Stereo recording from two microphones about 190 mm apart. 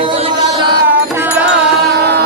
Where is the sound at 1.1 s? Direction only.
10° right (ahead or behind).